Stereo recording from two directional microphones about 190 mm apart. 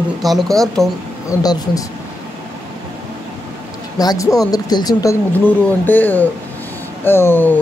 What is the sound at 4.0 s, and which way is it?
Speech, 20° left (ahead or behind).